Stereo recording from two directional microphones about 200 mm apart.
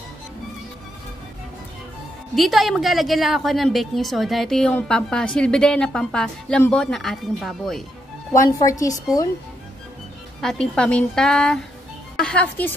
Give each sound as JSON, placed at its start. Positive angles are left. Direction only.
{"t": 2.3, "sound": "a woman's voice", "side_deg": 0}
{"t": 8.3, "sound": "a woman's voice", "side_deg": 15}
{"t": 10.4, "sound": "a woman's voice", "side_deg": 5}